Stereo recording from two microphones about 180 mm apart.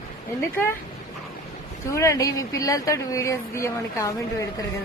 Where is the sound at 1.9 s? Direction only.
15° left (ahead or behind).